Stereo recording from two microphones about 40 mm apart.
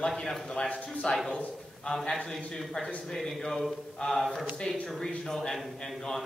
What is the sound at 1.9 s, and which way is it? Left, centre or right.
A man's voice, centre.